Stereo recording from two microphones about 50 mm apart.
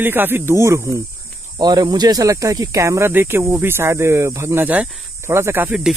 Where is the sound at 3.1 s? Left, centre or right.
Right.